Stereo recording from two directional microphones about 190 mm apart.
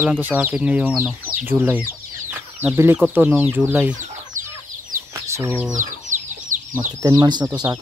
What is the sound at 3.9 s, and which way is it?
Chicken, 40° right (ahead or behind).